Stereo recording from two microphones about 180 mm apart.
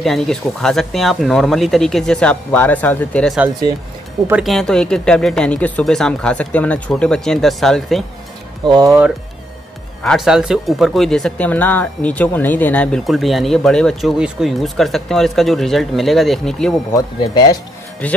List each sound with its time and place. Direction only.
0.0 s speech: centre (ahead or behind)
8.6 s speech: 25° right (ahead or behind)
10.0 s speech: centre (ahead or behind)
16.9 s speech: 20° left (ahead or behind)
18.0 s speech: 10° left (ahead or behind)